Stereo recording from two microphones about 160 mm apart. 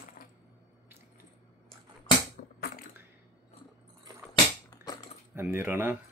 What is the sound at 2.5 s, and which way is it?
Typing, 65° left (ahead or behind).